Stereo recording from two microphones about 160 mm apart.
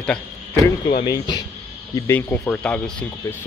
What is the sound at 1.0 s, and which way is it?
Speech, 25° left (ahead or behind).